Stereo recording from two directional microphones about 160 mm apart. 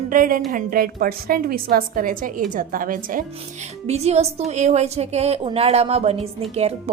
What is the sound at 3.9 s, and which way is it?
A woman's voice, 40° right (ahead or behind).